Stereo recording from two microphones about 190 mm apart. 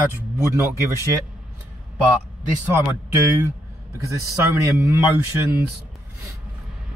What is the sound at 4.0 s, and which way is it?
Speech, 15° right (ahead or behind).